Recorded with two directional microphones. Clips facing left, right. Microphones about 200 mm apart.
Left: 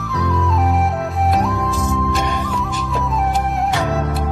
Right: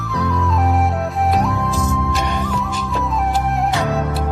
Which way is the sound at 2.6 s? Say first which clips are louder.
Even; centre (ahead or behind).